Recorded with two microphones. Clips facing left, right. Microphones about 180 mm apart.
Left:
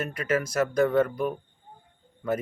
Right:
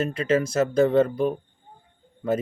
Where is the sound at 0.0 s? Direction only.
25° right (ahead or behind).